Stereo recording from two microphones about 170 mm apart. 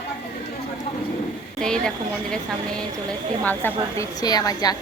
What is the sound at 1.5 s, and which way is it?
A woman's voice, 5° left (ahead or behind).